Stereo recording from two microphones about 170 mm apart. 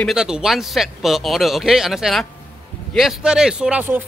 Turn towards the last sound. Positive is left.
turn(degrees=-10)  # may be behind; listen again after turning